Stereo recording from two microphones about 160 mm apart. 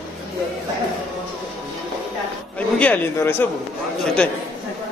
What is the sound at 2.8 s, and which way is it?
Speech, 10° left (ahead or behind).